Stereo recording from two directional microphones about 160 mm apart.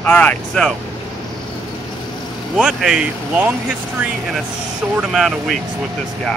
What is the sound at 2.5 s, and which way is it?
Speech, 5° right (ahead or behind).